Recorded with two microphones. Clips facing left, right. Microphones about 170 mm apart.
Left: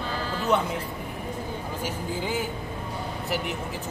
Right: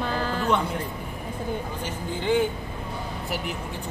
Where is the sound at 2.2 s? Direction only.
5° left (ahead or behind).